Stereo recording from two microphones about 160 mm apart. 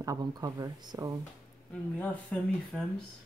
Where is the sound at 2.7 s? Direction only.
5° right (ahead or behind).